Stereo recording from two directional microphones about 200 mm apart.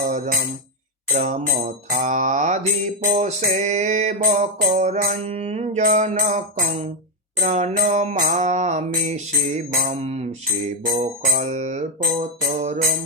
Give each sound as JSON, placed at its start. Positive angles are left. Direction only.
{"t": 0.0, "sound": "tambourine", "side_deg": -40}
{"t": 1.1, "sound": "music", "side_deg": -35}